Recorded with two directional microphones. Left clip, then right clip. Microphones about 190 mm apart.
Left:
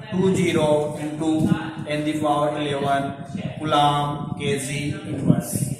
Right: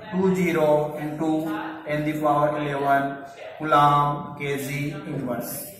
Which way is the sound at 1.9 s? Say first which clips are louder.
Left 1 dB; 10° left (ahead or behind).